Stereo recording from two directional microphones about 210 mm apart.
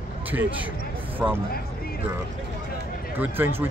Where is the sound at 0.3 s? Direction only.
10° right (ahead or behind).